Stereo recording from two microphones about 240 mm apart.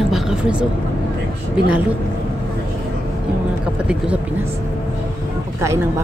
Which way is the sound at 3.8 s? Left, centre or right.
Centre.